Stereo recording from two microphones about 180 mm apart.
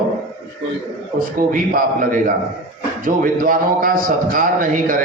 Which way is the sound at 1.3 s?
50° right (ahead or behind).